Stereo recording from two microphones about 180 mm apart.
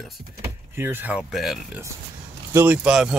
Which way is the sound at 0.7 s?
10° right (ahead or behind).